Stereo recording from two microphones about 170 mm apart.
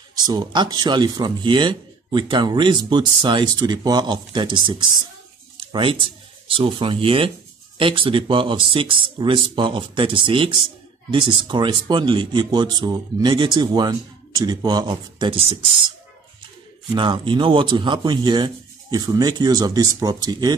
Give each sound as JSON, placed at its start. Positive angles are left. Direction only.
{"t": 0.3, "sound": "speech", "side_deg": -25}
{"t": 16.9, "sound": "speech", "side_deg": -30}